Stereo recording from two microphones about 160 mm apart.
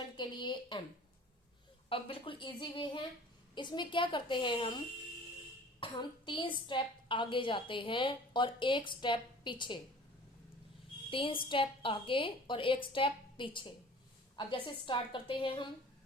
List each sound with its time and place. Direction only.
0.2 s a sound: 30° left (ahead or behind)
1.9 s a woman's voice: 35° left (ahead or behind)
5.8 s a woman's voice: 30° left (ahead or behind)
11.1 s a woman's voice: 35° left (ahead or behind)